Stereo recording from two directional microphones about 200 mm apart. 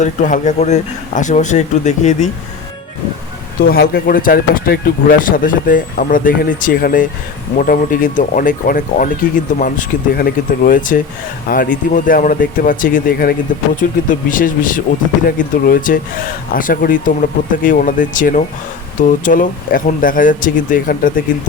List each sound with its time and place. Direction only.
0.0 s speech: 40° left (ahead or behind)
3.6 s speech: 50° left (ahead or behind)